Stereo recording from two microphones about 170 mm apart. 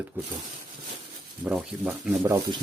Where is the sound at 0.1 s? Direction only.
10° right (ahead or behind).